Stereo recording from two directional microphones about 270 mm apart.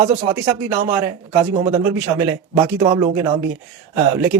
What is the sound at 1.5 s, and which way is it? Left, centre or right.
Speech, right.